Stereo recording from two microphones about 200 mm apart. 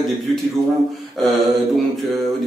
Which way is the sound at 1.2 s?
Centre (ahead or behind).